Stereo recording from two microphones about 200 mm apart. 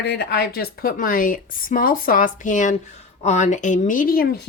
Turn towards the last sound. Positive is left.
turn(degrees=50)  # may be behind; listen again after turning